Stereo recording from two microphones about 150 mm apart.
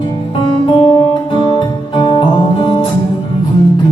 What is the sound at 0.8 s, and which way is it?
Music, 30° left (ahead or behind).